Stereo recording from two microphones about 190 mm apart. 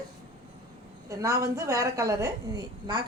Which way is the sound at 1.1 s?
15° right (ahead or behind).